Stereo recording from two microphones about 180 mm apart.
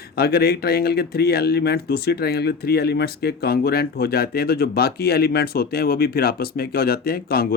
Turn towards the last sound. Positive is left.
turn(degrees=60)  # may be behind; listen again after turning